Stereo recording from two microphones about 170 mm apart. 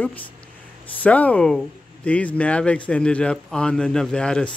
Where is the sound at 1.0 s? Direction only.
10° left (ahead or behind).